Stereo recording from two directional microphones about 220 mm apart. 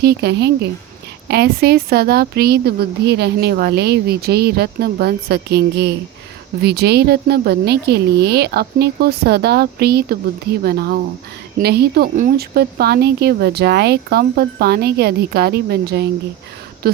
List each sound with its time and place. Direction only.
0.0 s a woman's voice: 50° right (ahead or behind)